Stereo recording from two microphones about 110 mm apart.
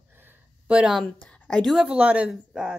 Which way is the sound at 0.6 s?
10° right (ahead or behind).